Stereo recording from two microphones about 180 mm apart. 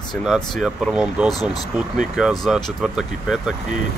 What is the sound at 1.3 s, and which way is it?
Speech, 20° left (ahead or behind).